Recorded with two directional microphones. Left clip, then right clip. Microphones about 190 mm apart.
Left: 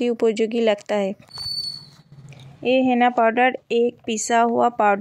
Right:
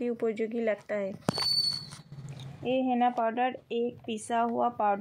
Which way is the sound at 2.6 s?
30° left (ahead or behind).